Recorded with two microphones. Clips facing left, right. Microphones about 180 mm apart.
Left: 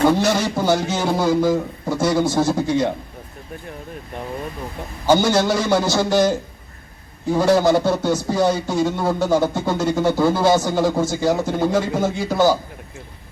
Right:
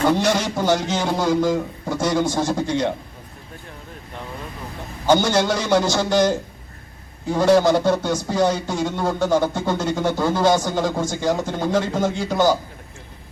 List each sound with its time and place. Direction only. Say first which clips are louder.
0.1 s speech: left 1 dB; 10° left (ahead or behind)
5.0 s speech: left 1 dB; 10° left (ahead or behind)